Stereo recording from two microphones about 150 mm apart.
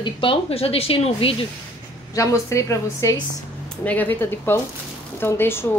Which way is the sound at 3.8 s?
10° left (ahead or behind).